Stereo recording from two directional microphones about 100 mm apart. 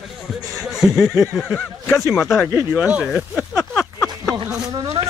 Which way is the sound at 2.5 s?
15° right (ahead or behind).